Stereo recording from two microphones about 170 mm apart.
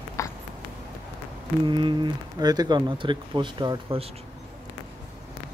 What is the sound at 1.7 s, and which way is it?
Speech, 30° right (ahead or behind).